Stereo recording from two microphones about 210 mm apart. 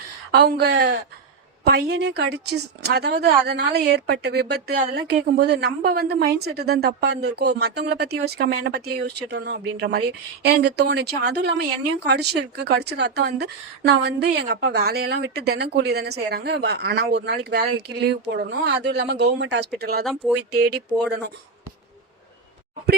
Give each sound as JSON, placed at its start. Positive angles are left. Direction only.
{"t": 0.3, "sound": "speech", "side_deg": -50}